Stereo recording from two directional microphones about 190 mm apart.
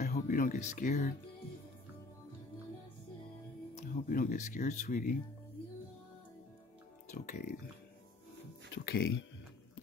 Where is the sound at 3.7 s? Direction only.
40° left (ahead or behind).